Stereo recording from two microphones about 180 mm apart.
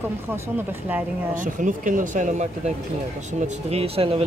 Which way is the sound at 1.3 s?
45° right (ahead or behind).